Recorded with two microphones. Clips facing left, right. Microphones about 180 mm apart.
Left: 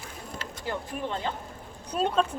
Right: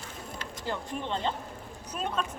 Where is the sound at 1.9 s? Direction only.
30° left (ahead or behind).